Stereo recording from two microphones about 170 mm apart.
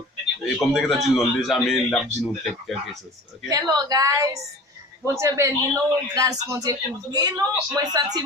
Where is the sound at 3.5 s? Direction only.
20° right (ahead or behind).